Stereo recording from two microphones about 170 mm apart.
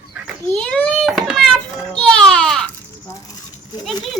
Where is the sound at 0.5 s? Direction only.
5° left (ahead or behind).